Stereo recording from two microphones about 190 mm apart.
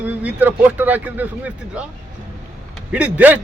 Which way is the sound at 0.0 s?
10° right (ahead or behind).